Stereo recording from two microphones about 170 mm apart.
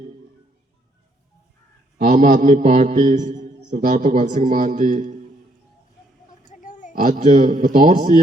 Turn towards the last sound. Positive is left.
turn(degrees=-50)  # may be behind; listen again after turning